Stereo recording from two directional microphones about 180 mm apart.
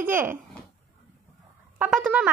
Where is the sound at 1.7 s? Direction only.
10° right (ahead or behind).